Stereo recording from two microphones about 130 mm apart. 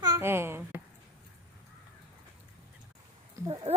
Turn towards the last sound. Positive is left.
turn(degrees=-50)  # may be behind; listen again after turning